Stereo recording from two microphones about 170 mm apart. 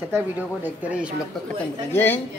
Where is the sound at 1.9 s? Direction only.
10° left (ahead or behind).